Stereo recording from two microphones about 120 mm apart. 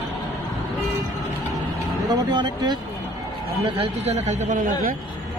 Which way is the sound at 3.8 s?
60° right (ahead or behind).